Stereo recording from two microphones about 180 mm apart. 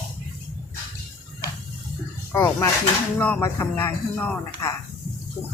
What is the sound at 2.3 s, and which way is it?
Speech, 15° left (ahead or behind).